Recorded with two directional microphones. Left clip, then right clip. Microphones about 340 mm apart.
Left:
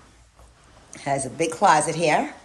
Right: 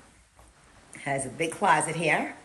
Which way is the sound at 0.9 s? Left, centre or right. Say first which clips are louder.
Left 5 dB; centre.